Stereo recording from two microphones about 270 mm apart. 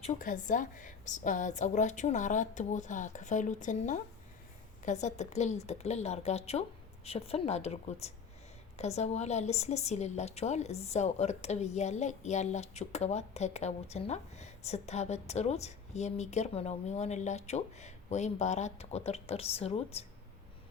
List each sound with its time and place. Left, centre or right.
0.0 s a woman's voice: left